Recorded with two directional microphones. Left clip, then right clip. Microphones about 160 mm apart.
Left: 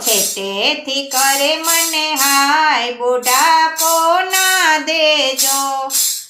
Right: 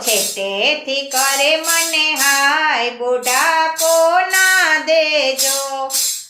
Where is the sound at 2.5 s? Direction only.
20° left (ahead or behind).